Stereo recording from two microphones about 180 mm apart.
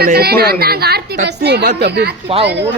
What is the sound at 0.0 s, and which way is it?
A woman's voice, 60° right (ahead or behind).